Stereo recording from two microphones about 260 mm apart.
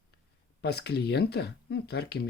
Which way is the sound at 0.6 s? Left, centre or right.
Left.